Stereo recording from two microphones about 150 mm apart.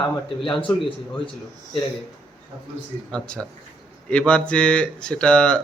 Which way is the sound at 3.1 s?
5° left (ahead or behind).